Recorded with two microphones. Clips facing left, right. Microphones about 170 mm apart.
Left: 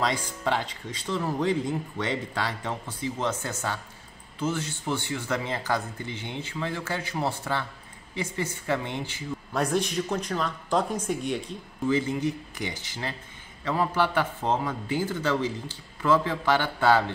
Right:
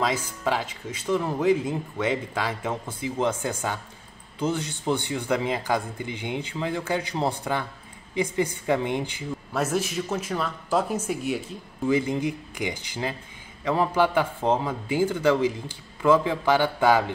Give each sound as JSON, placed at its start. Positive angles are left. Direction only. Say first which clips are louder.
{"t": 0.0, "sound": "speech", "louder": "right 2 dB", "side_deg": -5}
{"t": 9.5, "sound": "speech", "louder": "even", "side_deg": -5}